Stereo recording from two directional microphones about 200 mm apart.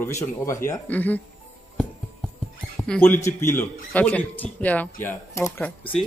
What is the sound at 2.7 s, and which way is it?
A man's voice, 5° left (ahead or behind).